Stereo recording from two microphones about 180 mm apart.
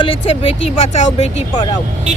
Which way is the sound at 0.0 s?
30° left (ahead or behind).